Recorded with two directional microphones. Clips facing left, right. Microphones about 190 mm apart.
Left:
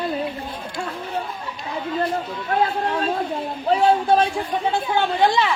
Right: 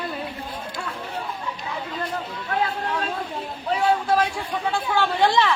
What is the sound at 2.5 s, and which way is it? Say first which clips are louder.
A man's voice: left 4 dB; 35° left (ahead or behind).